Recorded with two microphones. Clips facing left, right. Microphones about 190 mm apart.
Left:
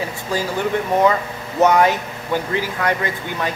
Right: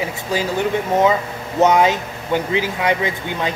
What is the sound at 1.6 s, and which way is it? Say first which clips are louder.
Speech: even; 20° right (ahead or behind).